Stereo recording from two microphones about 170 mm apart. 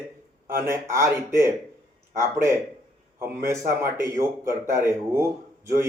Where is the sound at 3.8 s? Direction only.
15° right (ahead or behind).